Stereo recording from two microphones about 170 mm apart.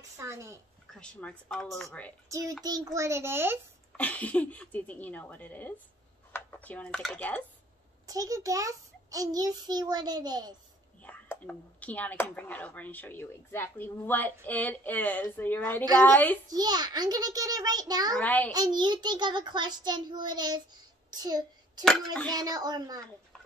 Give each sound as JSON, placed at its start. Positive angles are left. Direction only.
{"t": 0.2, "sound": "a child's voice", "side_deg": -15}
{"t": 0.9, "sound": "speech", "side_deg": 5}
{"t": 2.2, "sound": "a child's voice", "side_deg": -20}
{"t": 3.9, "sound": "speech", "side_deg": 10}
{"t": 8.1, "sound": "a child's voice", "side_deg": -20}
{"t": 11.0, "sound": "speech", "side_deg": 10}
{"t": 16.4, "sound": "a child's voice", "side_deg": -25}
{"t": 18.2, "sound": "speech", "side_deg": 10}
{"t": 18.5, "sound": "a child's voice", "side_deg": -25}
{"t": 21.1, "sound": "a sound", "side_deg": -25}
{"t": 21.8, "sound": "speech", "side_deg": 5}
{"t": 22.3, "sound": "a child's voice", "side_deg": -20}